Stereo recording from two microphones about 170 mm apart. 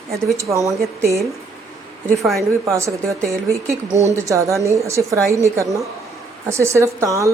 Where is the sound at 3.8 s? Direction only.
20° left (ahead or behind).